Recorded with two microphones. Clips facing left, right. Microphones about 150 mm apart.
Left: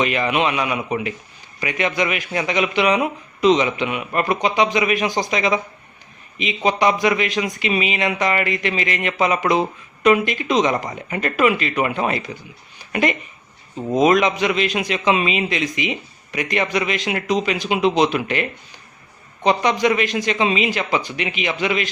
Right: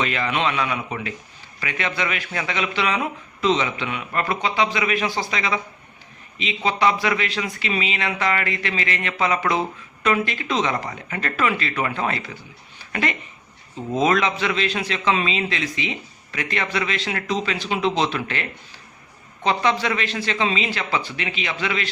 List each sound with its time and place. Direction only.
0.0 s speech: 15° left (ahead or behind)
12.8 s a sound: 15° left (ahead or behind)
13.7 s speech: 15° left (ahead or behind)